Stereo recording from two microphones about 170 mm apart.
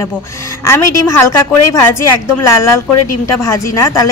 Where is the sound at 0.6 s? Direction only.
15° left (ahead or behind).